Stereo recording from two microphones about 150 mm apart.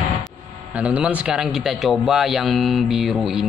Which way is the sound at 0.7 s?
10° right (ahead or behind).